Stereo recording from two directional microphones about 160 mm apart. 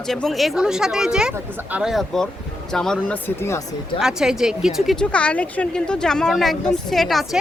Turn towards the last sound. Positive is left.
turn(degrees=0)  # may be behind; listen again after turning